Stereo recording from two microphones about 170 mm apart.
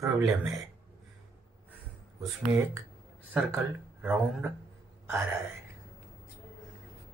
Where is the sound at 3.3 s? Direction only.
10° right (ahead or behind).